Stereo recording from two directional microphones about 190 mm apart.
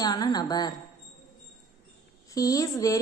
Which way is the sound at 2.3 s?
20° left (ahead or behind).